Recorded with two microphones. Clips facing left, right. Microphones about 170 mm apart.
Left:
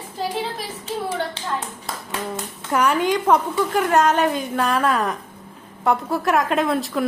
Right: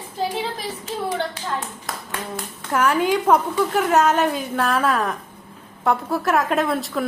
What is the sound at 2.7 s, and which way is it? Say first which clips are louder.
A woman's voice: even; centre (ahead or behind).